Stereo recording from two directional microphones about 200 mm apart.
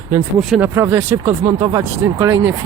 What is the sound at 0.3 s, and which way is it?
Speech, 5° right (ahead or behind).